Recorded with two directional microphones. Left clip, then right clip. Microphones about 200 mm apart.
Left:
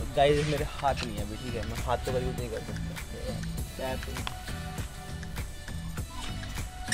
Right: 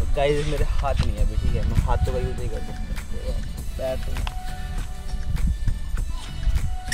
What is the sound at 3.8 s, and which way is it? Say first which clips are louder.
Speech: right 7 dB; centre (ahead or behind).